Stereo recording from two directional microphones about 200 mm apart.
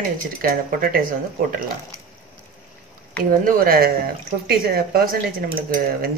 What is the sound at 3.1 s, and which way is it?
Speech, 45° right (ahead or behind).